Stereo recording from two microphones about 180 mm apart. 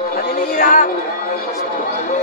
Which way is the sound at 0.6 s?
50° left (ahead or behind).